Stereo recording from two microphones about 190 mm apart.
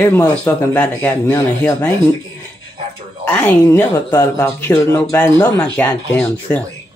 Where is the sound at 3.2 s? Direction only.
10° left (ahead or behind).